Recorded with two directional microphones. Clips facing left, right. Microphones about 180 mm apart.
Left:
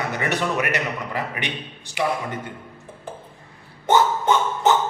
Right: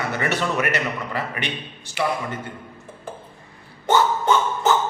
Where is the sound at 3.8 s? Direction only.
15° left (ahead or behind).